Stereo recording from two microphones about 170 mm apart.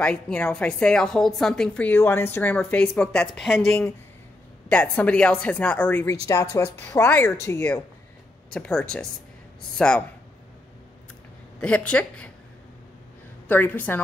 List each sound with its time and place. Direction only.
0.0 s a woman's voice: 5° left (ahead or behind)
6.2 s a woman's voice: 20° left (ahead or behind)
11.6 s a woman's voice: 5° left (ahead or behind)
13.5 s a woman's voice: 10° left (ahead or behind)